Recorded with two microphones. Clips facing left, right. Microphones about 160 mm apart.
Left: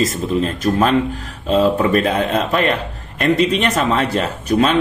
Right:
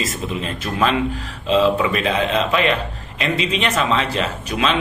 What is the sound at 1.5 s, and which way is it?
A man's voice, 45° left (ahead or behind).